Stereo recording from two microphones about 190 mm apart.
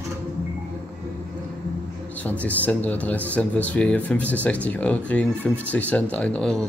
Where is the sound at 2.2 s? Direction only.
10° left (ahead or behind).